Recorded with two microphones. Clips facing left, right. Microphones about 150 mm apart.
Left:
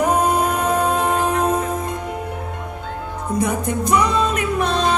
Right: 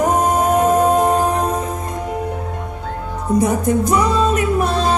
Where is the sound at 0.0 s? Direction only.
45° right (ahead or behind).